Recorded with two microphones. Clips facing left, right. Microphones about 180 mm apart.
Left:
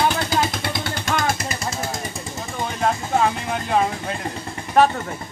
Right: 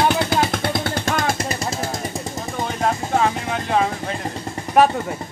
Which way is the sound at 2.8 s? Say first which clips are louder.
Even; centre (ahead or behind).